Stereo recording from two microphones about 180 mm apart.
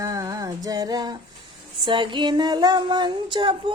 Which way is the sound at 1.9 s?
25° right (ahead or behind).